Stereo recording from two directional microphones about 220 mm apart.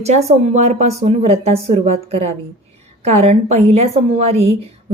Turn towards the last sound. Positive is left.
turn(degrees=-30)  # may be behind; listen again after turning